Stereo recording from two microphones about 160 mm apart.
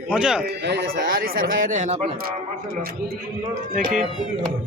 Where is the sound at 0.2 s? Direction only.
5° right (ahead or behind).